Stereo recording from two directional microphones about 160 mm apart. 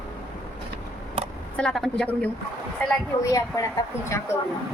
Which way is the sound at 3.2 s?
20° left (ahead or behind).